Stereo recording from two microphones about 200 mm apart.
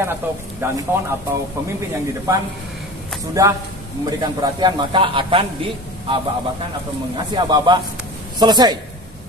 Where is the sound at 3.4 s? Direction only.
15° right (ahead or behind).